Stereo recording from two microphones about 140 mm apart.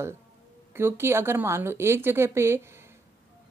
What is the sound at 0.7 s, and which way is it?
A woman's voice, 15° right (ahead or behind).